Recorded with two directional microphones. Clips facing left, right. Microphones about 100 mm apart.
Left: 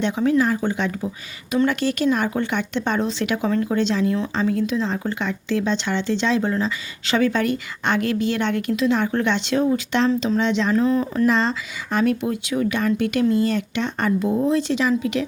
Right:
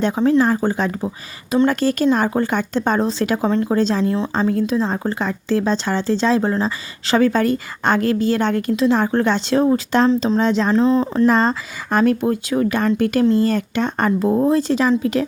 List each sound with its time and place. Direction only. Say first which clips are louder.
0.0 s speech: right 3 dB; 40° right (ahead or behind)
10.8 s speech: right 4 dB; 25° right (ahead or behind)
11.3 s speech: right 4 dB; 45° right (ahead or behind)